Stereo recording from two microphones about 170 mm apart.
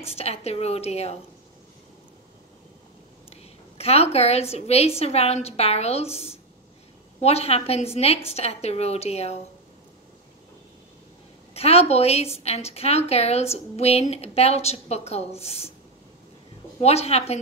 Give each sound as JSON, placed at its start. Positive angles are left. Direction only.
{"t": 0.0, "sound": "a woman's voice", "side_deg": 35}
{"t": 3.3, "sound": "a woman's voice", "side_deg": 35}
{"t": 11.5, "sound": "a woman's voice", "side_deg": 35}
{"t": 16.8, "sound": "a woman's voice", "side_deg": 35}